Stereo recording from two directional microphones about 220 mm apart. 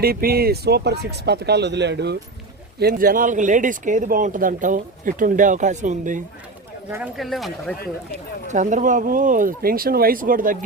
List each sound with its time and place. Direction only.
0.0 s speech: 45° right (ahead or behind)
7.2 s speech: centre (ahead or behind)
8.4 s speech: 35° right (ahead or behind)